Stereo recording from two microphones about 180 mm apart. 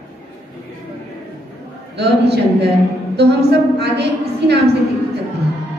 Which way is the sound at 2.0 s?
65° right (ahead or behind).